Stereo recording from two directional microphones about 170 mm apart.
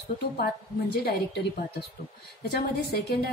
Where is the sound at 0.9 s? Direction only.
70° left (ahead or behind).